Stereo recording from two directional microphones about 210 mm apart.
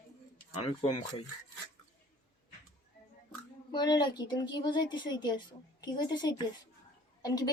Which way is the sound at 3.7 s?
20° left (ahead or behind).